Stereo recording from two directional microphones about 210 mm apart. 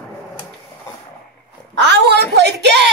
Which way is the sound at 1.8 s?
55° right (ahead or behind).